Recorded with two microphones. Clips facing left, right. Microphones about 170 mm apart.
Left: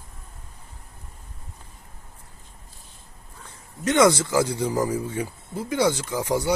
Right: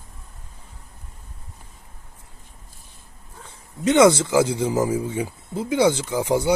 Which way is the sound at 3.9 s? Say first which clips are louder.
Right 3 dB; 25° right (ahead or behind).